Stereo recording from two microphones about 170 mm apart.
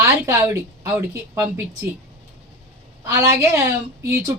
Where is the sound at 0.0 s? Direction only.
15° right (ahead or behind).